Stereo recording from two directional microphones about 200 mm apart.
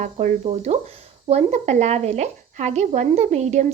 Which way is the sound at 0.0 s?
40° right (ahead or behind).